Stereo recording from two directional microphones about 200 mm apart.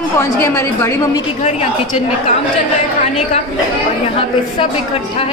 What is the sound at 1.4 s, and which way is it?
Speech, 30° left (ahead or behind).